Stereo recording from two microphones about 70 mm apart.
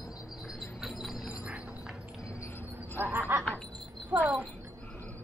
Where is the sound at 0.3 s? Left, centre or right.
Centre.